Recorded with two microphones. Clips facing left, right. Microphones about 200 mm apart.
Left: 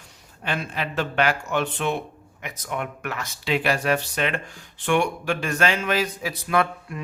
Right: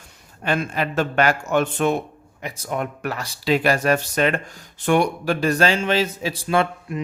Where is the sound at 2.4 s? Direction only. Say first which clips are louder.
Right 4 dB; 35° right (ahead or behind).